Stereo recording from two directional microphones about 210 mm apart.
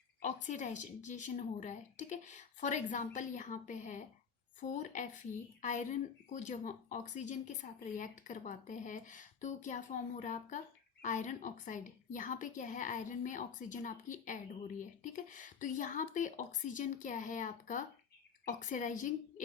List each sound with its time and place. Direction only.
0.2 s speech: 35° left (ahead or behind)